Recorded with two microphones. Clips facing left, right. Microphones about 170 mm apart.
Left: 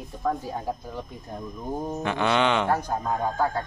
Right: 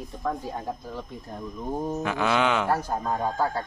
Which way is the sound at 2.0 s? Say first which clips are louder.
Left 2 dB; 5° right (ahead or behind).